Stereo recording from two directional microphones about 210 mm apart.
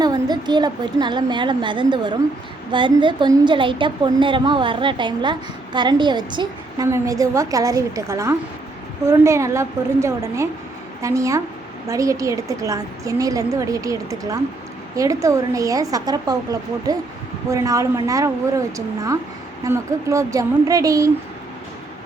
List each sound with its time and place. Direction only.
0.0 s a woman's voice: 20° right (ahead or behind)
19.6 s a woman's voice: 15° right (ahead or behind)